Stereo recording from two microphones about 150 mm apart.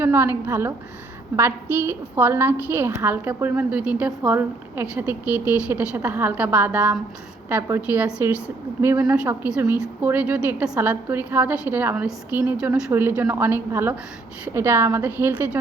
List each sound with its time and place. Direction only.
0.0 s a woman's voice: 15° right (ahead or behind)
9.1 s a woman's voice: 10° right (ahead or behind)